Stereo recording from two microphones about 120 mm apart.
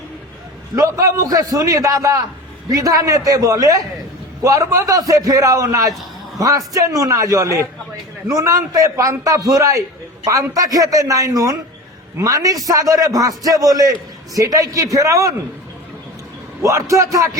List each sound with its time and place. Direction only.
0.8 s a man's voice: 25° right (ahead or behind)
16.6 s a man's voice: 25° right (ahead or behind)